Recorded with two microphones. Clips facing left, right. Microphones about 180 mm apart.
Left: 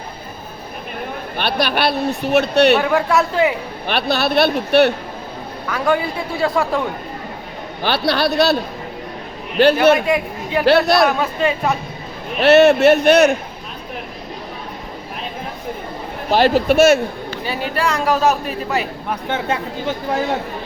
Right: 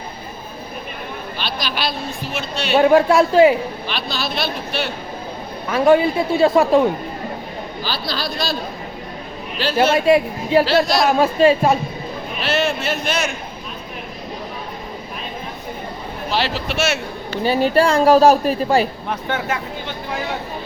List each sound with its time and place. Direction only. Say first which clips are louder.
1.4 s a man's voice: left 7 dB; 60° left (ahead or behind)
2.8 s a man's voice: right 4 dB; 25° right (ahead or behind)
3.8 s a man's voice: left 7 dB; 65° left (ahead or behind)
5.6 s a man's voice: right 5 dB; 25° right (ahead or behind)
7.8 s speech: left 9 dB; 70° left (ahead or behind)
9.6 s a man's voice: left 6 dB; 60° left (ahead or behind)
10.1 s a man's voice: right 5 dB; 30° right (ahead or behind)
10.7 s a man's voice: left 3 dB; 65° left (ahead or behind)
11.2 s a man's voice: right 5 dB; 30° right (ahead or behind)
12.4 s a man's voice: left 11 dB; 70° left (ahead or behind)
16.3 s speech: left 9 dB; 50° left (ahead or behind)
17.4 s a woman's voice: right 6 dB; 30° right (ahead or behind)